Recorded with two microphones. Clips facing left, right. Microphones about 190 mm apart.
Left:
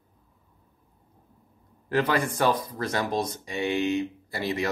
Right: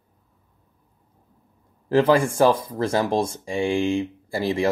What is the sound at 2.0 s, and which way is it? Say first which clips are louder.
Speech: right 7 dB; 25° right (ahead or behind).